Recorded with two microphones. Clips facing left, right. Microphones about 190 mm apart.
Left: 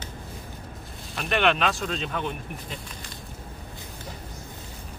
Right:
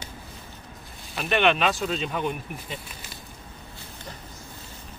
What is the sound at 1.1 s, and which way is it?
Speech, centre (ahead or behind).